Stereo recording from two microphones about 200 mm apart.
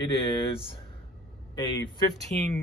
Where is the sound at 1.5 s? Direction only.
25° left (ahead or behind).